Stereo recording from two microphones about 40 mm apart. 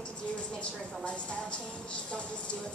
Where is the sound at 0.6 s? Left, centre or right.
Left.